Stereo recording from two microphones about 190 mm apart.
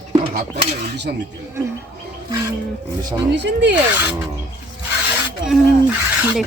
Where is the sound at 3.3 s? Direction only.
70° right (ahead or behind).